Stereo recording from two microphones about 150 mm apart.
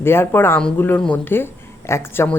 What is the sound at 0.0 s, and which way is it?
Speech, 15° left (ahead or behind).